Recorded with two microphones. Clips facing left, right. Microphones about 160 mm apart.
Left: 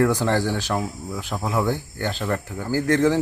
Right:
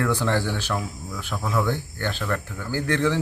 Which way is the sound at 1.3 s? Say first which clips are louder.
Left 1 dB; 20° left (ahead or behind).